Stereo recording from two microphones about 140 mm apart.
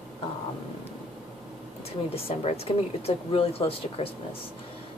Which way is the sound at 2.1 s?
45° left (ahead or behind).